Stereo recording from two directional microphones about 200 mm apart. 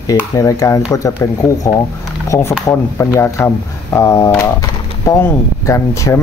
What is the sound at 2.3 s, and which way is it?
Speech, 15° left (ahead or behind).